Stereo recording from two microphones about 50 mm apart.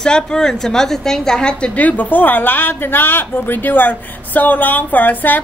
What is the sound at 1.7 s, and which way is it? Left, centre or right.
Speech, left.